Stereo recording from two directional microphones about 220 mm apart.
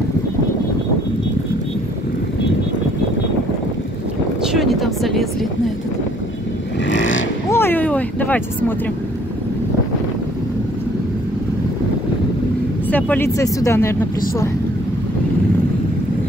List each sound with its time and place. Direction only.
4.5 s speech: centre (ahead or behind)
6.9 s vehicle: 60° left (ahead or behind)
7.4 s speech: 10° left (ahead or behind)
12.9 s speech: 10° left (ahead or behind)